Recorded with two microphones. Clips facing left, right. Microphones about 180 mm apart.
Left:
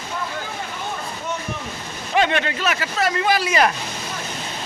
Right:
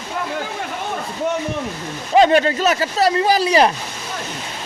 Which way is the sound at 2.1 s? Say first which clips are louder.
Right 7 dB; 35° right (ahead or behind).